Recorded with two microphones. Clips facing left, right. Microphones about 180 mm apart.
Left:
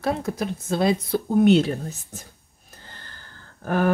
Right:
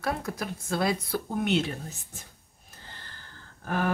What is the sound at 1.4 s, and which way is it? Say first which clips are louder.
Speech: left 11 dB; 40° left (ahead or behind).